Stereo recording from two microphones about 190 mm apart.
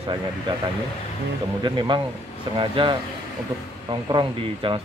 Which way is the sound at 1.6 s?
25° right (ahead or behind).